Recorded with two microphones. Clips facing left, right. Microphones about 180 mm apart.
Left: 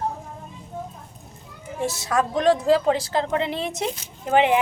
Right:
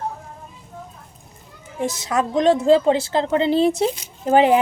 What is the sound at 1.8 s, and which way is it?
A woman's voice, 20° right (ahead or behind).